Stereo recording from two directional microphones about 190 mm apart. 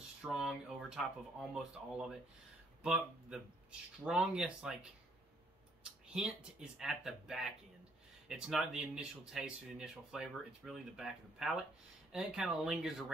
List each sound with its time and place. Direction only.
0.2 s speech: centre (ahead or behind)
6.1 s speech: 5° right (ahead or behind)